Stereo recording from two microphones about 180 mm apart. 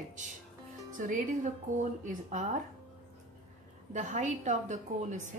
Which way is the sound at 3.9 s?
40° right (ahead or behind).